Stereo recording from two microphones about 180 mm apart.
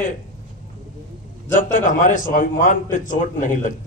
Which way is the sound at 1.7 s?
45° left (ahead or behind).